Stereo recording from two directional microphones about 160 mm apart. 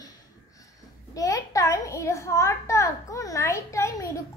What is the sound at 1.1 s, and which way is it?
A child's voice, 20° left (ahead or behind).